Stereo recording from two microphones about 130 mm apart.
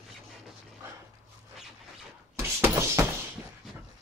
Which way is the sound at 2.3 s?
20° right (ahead or behind).